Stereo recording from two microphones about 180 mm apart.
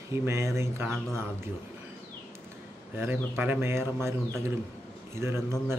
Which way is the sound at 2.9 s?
10° right (ahead or behind).